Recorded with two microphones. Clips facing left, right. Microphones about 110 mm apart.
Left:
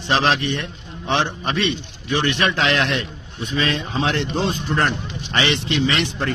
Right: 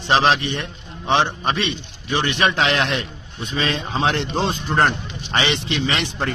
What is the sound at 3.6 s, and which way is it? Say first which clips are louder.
Speech: even; 30° right (ahead or behind).